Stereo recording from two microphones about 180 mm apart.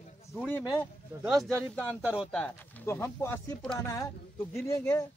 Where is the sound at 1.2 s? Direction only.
Centre (ahead or behind).